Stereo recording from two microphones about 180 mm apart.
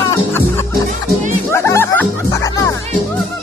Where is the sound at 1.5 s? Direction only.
15° left (ahead or behind).